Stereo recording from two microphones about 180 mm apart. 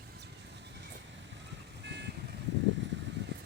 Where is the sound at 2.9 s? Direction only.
80° right.